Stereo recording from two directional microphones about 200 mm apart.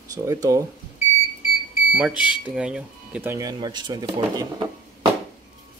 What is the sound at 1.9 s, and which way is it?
Speech, 5° right (ahead or behind).